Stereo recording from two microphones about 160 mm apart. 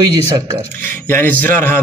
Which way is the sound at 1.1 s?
10° left (ahead or behind).